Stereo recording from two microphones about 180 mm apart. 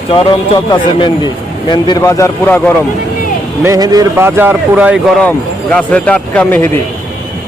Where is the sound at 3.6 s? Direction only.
20° right (ahead or behind).